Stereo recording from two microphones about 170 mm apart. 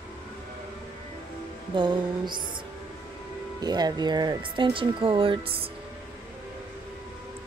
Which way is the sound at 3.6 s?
25° right (ahead or behind).